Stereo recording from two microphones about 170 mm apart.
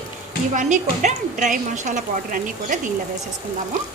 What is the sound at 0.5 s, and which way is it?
A woman's voice, 45° right (ahead or behind).